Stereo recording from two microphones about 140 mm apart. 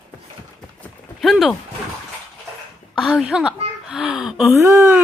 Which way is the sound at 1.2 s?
Centre (ahead or behind).